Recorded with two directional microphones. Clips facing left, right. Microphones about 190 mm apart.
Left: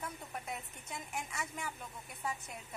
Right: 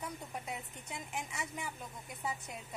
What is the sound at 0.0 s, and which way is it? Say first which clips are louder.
A woman's voice: right 1 dB; 15° right (ahead or behind).